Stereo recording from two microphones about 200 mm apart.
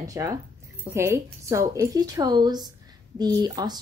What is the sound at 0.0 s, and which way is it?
A woman's voice, 15° right (ahead or behind).